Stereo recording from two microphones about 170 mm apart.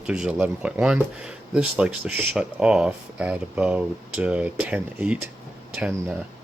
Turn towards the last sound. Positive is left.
turn(degrees=-5)  # may be behind; listen again after turning